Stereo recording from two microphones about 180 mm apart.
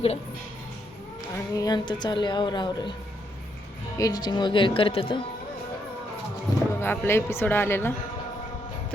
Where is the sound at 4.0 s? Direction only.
20° left (ahead or behind).